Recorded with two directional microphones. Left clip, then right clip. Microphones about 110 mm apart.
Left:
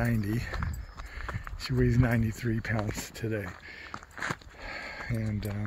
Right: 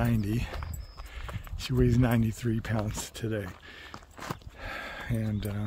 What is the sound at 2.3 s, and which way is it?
Speech, 35° right (ahead or behind).